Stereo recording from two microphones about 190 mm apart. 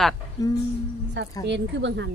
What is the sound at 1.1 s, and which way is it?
Speech, 70° right (ahead or behind).